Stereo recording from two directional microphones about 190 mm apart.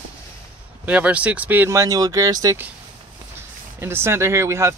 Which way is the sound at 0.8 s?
5° right (ahead or behind).